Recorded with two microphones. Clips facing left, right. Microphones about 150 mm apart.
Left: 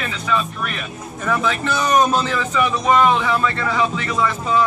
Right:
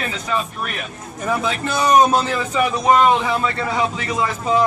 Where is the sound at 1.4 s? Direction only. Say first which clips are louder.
Right 3 dB; 35° right (ahead or behind).